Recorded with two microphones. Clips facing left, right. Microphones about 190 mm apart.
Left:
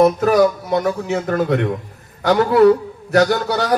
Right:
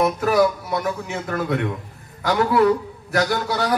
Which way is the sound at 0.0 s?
40° left (ahead or behind).